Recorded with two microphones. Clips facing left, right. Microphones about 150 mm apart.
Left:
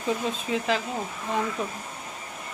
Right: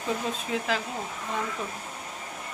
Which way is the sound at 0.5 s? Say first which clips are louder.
Left 3 dB; centre (ahead or behind).